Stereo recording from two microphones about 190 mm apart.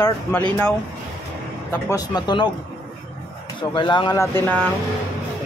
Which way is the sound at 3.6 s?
25° left (ahead or behind).